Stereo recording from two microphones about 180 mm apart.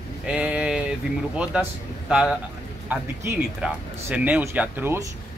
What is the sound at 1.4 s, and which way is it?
Speech, 5° right (ahead or behind).